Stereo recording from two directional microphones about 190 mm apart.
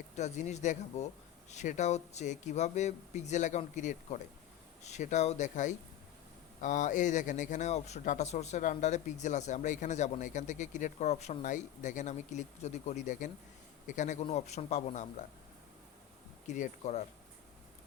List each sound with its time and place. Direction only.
0.2 s speech: 40° left (ahead or behind)
16.5 s speech: 40° left (ahead or behind)